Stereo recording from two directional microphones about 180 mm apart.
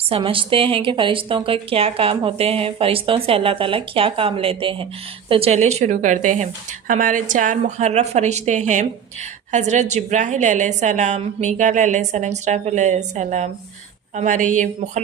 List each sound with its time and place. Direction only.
0.1 s a woman's voice: 30° right (ahead or behind)